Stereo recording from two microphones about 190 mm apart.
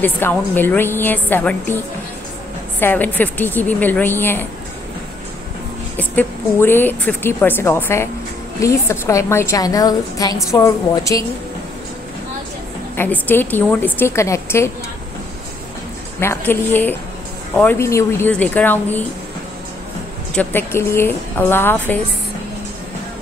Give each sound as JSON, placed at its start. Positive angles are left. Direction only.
{"t": 0.0, "sound": "a woman's voice", "side_deg": 10}
{"t": 2.8, "sound": "a woman's voice", "side_deg": 10}
{"t": 5.9, "sound": "a woman's voice", "side_deg": 10}
{"t": 12.9, "sound": "a woman's voice", "side_deg": 10}
{"t": 16.2, "sound": "a woman's voice", "side_deg": 10}
{"t": 20.3, "sound": "a woman's voice", "side_deg": 10}